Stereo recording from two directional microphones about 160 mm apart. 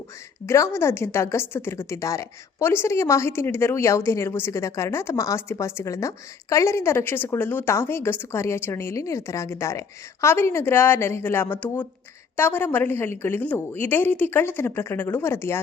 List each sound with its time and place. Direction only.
0.4 s speech: 20° left (ahead or behind)